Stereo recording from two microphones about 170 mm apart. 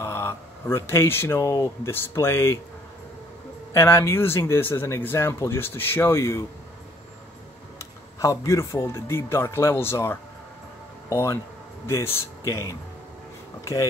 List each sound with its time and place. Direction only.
0.0 s speech: 15° left (ahead or behind)
3.7 s speech: 15° left (ahead or behind)
7.8 s speech: 20° left (ahead or behind)